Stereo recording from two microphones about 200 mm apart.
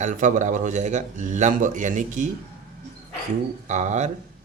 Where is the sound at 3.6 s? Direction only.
35° right (ahead or behind).